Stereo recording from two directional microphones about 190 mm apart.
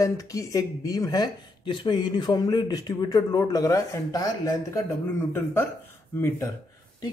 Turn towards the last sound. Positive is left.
turn(degrees=15)  # may be behind; listen again after turning